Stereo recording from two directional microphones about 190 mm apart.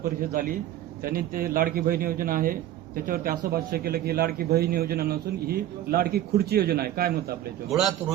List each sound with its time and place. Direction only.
0.0 s a man's voice: 50° right (ahead or behind)
7.7 s speech: centre (ahead or behind)